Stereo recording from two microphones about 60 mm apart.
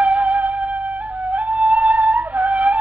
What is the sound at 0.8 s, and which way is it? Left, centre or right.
Flute, right.